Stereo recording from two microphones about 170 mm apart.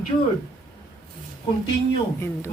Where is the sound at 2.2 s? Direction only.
15° left (ahead or behind).